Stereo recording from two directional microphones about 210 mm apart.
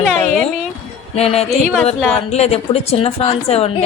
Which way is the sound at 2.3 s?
30° left (ahead or behind).